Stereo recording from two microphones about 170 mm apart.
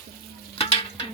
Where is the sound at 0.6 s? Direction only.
35° left (ahead or behind).